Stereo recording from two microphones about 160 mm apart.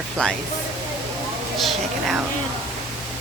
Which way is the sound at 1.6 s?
Centre (ahead or behind).